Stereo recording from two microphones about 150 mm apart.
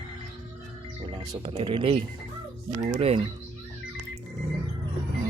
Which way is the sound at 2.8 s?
45° right (ahead or behind).